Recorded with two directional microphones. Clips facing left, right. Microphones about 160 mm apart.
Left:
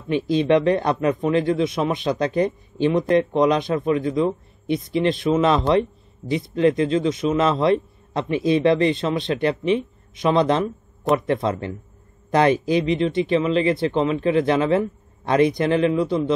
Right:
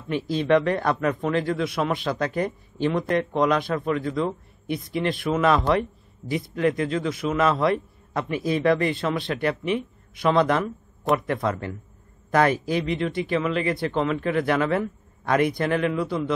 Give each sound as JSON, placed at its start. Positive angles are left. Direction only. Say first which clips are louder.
{"t": 0.1, "sound": "speech", "louder": "left 3 dB", "side_deg": 20}